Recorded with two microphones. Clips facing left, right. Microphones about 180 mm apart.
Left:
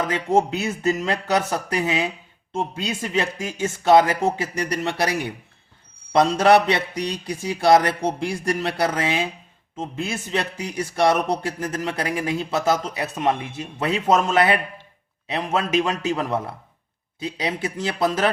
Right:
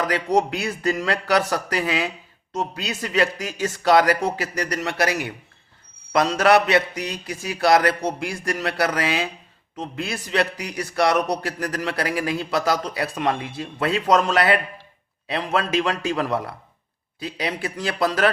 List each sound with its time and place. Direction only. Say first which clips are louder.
0.0 s a man's voice: left 1 dB; 25° left (ahead or behind)